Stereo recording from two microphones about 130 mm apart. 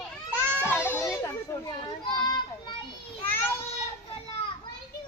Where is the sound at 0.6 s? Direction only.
20° left (ahead or behind).